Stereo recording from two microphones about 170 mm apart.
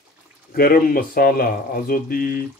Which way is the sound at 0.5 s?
60° left (ahead or behind).